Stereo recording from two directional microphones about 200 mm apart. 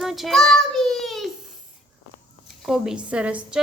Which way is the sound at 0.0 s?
Centre (ahead or behind).